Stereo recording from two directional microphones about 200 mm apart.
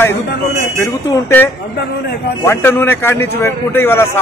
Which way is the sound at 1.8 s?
55° left (ahead or behind).